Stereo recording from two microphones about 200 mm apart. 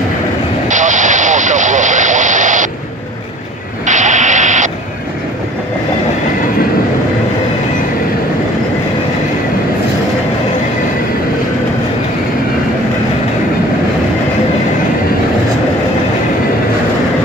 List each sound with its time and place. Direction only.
0.7 s vehicle: 40° right (ahead or behind)
3.8 s radio: 40° right (ahead or behind)